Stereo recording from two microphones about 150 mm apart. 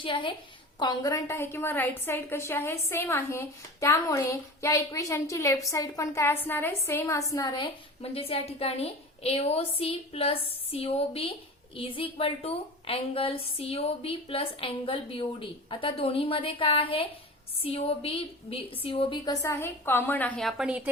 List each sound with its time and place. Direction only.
0.0 s a woman's voice: 35° left (ahead or behind)
19.2 s a woman's voice: 20° left (ahead or behind); by 20.9 s 10° right (ahead or behind)